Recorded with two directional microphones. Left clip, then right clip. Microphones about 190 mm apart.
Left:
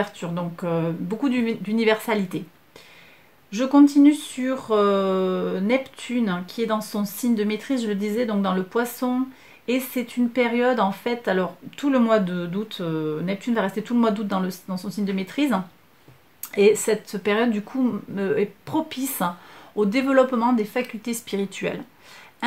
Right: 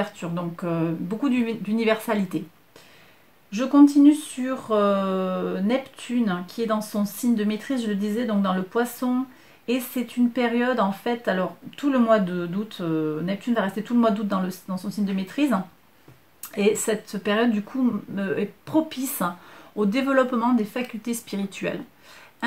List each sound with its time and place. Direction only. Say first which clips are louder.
0.0 s speech: left 1 dB; 40° left (ahead or behind)
3.4 s speech: even; 40° left (ahead or behind)